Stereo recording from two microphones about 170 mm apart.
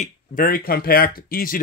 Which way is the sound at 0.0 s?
55° left (ahead or behind).